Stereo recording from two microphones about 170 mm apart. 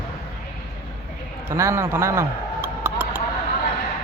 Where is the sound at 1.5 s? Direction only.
15° right (ahead or behind).